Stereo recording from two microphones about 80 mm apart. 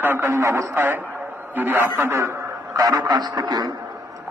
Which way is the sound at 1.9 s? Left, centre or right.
Right.